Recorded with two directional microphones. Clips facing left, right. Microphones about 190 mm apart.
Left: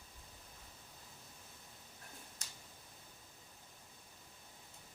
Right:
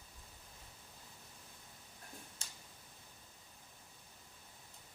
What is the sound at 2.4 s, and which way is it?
Tick-tock, 30° right (ahead or behind).